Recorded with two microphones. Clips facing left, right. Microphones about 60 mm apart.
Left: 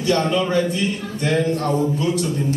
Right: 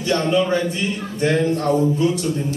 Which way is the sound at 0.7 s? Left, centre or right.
Right.